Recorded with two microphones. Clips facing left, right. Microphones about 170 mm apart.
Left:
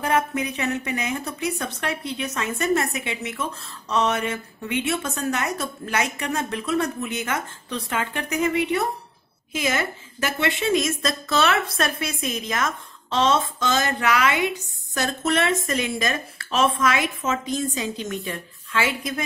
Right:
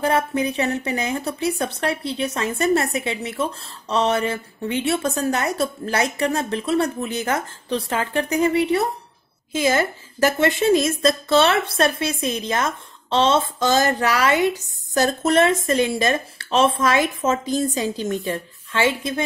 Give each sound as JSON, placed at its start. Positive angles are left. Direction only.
{"t": 0.0, "sound": "a woman's voice", "side_deg": -30}